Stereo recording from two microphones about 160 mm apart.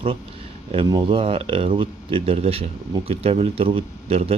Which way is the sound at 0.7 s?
30° right (ahead or behind).